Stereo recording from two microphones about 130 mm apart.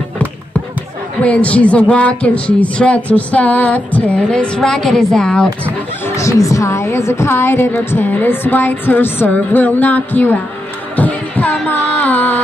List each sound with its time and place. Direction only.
1.2 s a woman's voice: 10° left (ahead or behind)
6.0 s a woman's voice: 25° left (ahead or behind)
11.0 s heart sounds: 15° left (ahead or behind)
12.0 s music: 15° left (ahead or behind)